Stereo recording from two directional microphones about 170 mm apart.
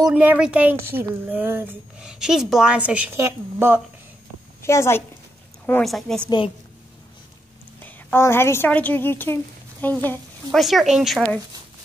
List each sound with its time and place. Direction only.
0.1 s a woman's voice: 10° right (ahead or behind)
4.6 s a woman's voice: 15° left (ahead or behind)
5.7 s speech: centre (ahead or behind)
6.2 s a woman's voice: 30° left (ahead or behind)
7.8 s a woman's voice: 15° left (ahead or behind)
10.6 s speech: centre (ahead or behind)